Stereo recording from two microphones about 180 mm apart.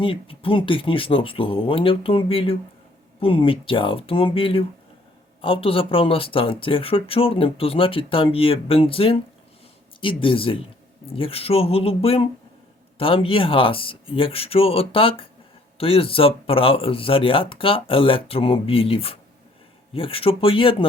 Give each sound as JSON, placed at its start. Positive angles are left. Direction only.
{"t": 0.0, "sound": "speech", "side_deg": 30}